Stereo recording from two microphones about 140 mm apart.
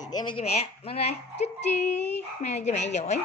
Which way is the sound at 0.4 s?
45° left (ahead or behind).